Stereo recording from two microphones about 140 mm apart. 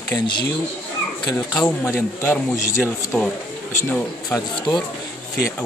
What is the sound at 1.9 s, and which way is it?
Speech, 15° left (ahead or behind).